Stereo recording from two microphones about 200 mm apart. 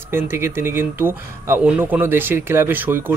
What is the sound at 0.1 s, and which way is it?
Speech, 10° right (ahead or behind).